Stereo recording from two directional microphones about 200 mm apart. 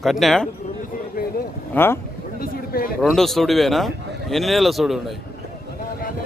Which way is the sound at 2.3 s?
45° left (ahead or behind).